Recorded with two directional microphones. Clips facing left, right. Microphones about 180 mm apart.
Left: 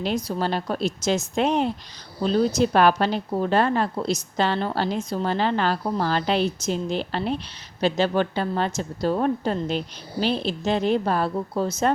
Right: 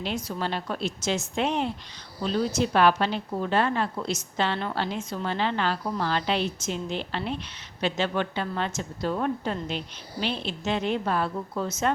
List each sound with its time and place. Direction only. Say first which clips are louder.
0.0 s a woman's voice: left 5 dB; 40° left (ahead or behind)